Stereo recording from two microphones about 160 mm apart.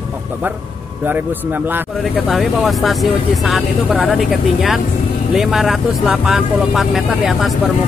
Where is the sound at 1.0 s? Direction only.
10° right (ahead or behind).